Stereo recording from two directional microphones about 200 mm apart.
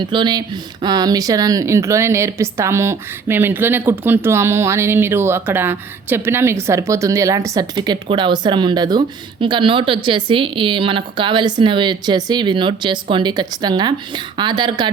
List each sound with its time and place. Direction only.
0.0 s speech: 25° right (ahead or behind)